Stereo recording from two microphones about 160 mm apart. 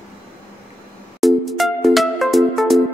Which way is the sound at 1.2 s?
Centre (ahead or behind).